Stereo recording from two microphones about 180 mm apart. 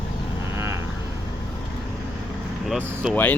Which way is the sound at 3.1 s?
10° left (ahead or behind).